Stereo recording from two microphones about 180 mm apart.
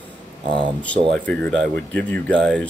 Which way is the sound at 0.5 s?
30° right (ahead or behind).